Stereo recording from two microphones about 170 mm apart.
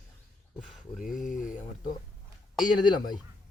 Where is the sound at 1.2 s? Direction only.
50° left (ahead or behind).